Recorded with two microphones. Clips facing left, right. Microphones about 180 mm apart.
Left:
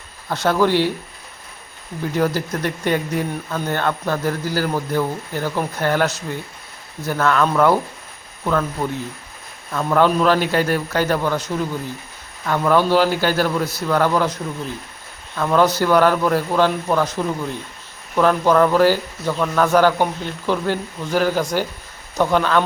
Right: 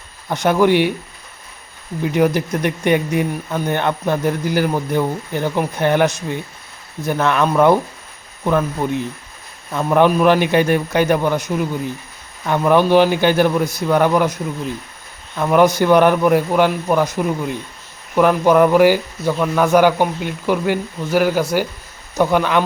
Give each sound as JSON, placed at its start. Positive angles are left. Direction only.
{"t": 0.3, "sound": "speech", "side_deg": -15}
{"t": 2.1, "sound": "speech", "side_deg": -20}
{"t": 15.4, "sound": "speech", "side_deg": -15}